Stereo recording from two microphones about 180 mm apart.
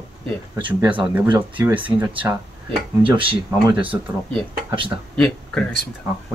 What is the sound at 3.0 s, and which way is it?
Speech, 30° right (ahead or behind).